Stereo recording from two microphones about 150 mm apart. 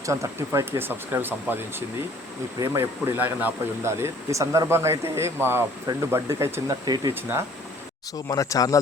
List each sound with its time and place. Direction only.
0.0 s speech: 20° right (ahead or behind)
2.6 s speech: 25° right (ahead or behind)
3.1 s speech: 10° right (ahead or behind)
7.1 s speech: 15° right (ahead or behind)
8.3 s speech: 25° left (ahead or behind)